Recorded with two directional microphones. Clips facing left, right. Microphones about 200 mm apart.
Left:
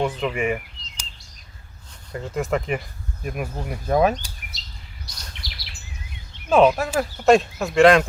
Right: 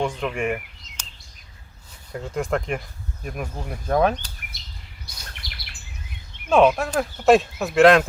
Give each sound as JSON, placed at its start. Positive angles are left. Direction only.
{"t": 0.0, "sound": "a sound", "side_deg": 5}
{"t": 2.1, "sound": "speech", "side_deg": 0}
{"t": 4.5, "sound": "chirp", "side_deg": -55}
{"t": 5.3, "sound": "bird vocalization", "side_deg": -55}
{"t": 6.5, "sound": "speech", "side_deg": 0}